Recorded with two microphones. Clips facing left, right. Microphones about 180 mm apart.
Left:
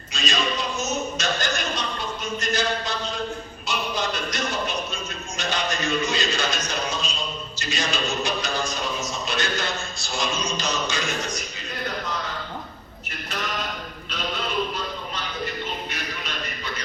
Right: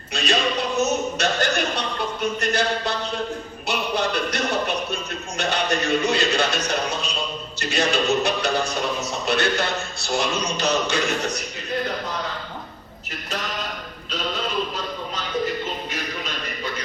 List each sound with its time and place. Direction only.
0.1 s a sound: 65° right (ahead or behind)
3.7 s music: 60° right (ahead or behind)
7.6 s a man's voice: 60° right (ahead or behind)